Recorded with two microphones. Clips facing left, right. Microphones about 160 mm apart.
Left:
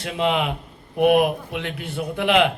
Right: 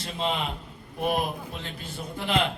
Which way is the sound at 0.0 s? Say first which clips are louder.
Left 7 dB; 65° left (ahead or behind).